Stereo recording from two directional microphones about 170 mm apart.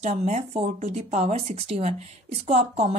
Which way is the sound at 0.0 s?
40° right (ahead or behind).